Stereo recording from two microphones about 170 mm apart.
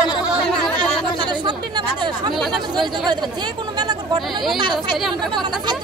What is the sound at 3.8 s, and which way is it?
Speech, 25° right (ahead or behind).